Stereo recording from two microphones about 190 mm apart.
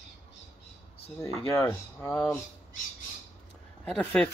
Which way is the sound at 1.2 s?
15° left (ahead or behind).